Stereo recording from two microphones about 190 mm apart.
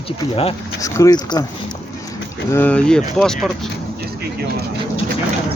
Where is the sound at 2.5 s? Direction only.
10° left (ahead or behind).